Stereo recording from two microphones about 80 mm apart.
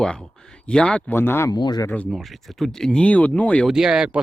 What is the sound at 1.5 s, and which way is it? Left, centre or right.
Speech, left.